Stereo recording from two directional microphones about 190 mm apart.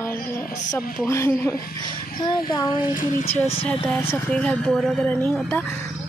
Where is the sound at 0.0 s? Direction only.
15° left (ahead or behind).